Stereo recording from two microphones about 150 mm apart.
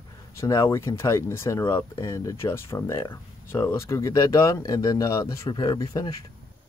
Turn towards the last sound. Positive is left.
turn(degrees=25)  # may be behind; listen again after turning